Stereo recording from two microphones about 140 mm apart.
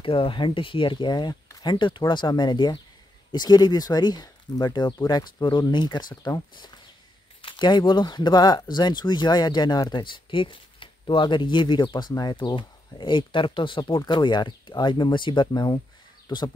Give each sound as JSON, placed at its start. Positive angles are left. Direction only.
{"t": 0.0, "sound": "speech", "side_deg": 40}